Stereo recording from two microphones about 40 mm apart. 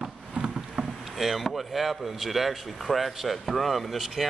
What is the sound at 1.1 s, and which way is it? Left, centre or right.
Speech, centre.